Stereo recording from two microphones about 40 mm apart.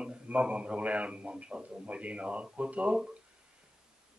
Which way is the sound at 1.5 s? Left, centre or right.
Centre.